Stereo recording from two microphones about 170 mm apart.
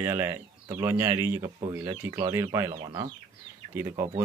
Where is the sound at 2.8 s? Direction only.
30° right (ahead or behind).